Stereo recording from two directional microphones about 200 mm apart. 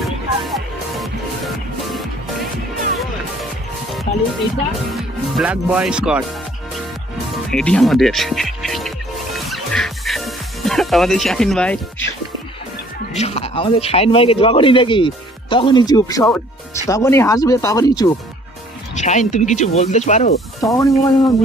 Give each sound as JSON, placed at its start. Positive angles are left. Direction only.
{"t": 0.0, "sound": "music", "side_deg": 0}
{"t": 4.9, "sound": "speech", "side_deg": -5}
{"t": 7.5, "sound": "speech", "side_deg": 5}
{"t": 9.5, "sound": "music", "side_deg": 0}
{"t": 13.1, "sound": "speech", "side_deg": 30}
{"t": 18.9, "sound": "speech", "side_deg": 35}
{"t": 20.7, "sound": "speech", "side_deg": 15}